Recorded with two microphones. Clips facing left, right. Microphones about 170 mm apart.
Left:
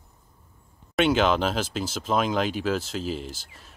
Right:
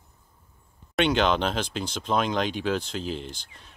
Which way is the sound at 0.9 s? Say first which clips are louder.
Left 1 dB; 5° left (ahead or behind).